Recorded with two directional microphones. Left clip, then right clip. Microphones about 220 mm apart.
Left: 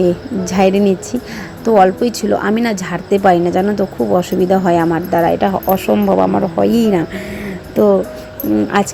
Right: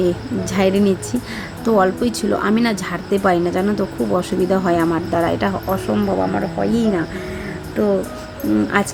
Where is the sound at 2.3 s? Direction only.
5° left (ahead or behind).